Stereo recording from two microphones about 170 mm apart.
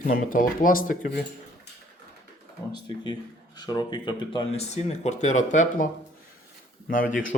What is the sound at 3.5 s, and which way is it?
Speech, 25° left (ahead or behind).